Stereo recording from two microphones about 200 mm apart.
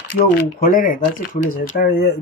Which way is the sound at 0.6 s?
40° left (ahead or behind).